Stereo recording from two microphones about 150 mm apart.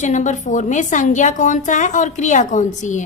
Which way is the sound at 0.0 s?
55° left (ahead or behind).